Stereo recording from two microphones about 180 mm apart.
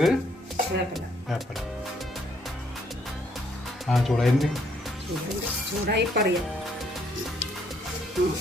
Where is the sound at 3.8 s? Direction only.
Centre (ahead or behind).